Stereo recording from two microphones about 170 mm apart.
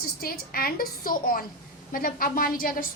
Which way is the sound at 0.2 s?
60° left (ahead or behind).